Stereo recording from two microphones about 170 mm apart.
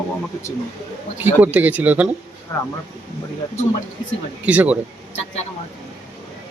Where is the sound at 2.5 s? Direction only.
15° left (ahead or behind).